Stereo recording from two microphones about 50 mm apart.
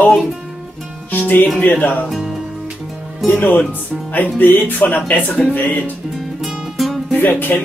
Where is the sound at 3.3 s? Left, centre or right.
Left.